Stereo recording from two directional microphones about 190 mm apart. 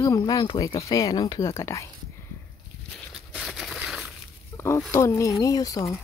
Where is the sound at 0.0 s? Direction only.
20° left (ahead or behind).